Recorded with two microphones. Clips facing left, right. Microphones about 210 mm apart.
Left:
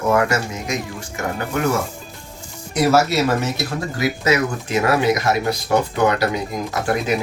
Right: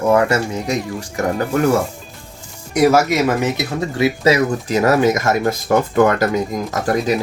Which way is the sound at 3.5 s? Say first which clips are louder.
Right 4 dB; 25° right (ahead or behind).